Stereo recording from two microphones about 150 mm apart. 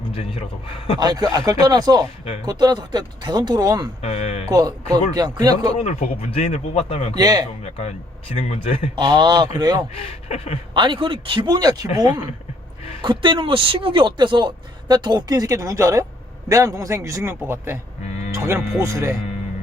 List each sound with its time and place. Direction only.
0.9 s speech: 25° right (ahead or behind)
4.0 s a man's voice: 45° left (ahead or behind)
4.4 s speech: 25° right (ahead or behind)
5.7 s a man's voice: 45° left (ahead or behind)
7.2 s speech: 25° right (ahead or behind)
7.6 s a man's voice: 50° left (ahead or behind)
9.0 s speech: 30° right (ahead or behind)
9.9 s a man's voice: 45° left (ahead or behind)
10.8 s speech: 30° right (ahead or behind); by 17.7 s 15° right (ahead or behind)
18.8 s speech: 20° right (ahead or behind)